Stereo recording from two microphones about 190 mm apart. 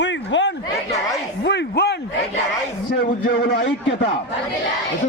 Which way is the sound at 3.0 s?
55° left (ahead or behind).